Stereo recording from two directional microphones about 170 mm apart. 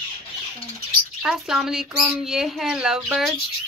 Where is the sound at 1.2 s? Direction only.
5° right (ahead or behind).